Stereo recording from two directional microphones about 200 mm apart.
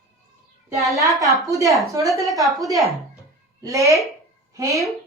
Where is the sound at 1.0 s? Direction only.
15° right (ahead or behind).